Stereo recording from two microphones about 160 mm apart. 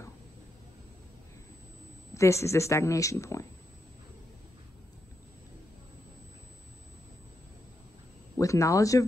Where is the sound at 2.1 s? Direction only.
15° left (ahead or behind).